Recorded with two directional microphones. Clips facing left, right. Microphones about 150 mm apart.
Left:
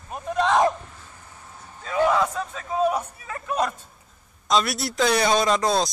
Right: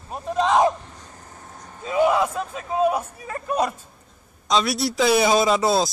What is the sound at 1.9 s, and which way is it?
A man's voice, 15° right (ahead or behind).